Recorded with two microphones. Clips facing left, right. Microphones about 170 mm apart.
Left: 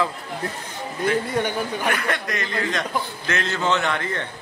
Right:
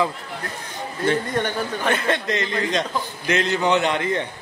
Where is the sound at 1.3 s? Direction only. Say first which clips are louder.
Even; 10° left (ahead or behind).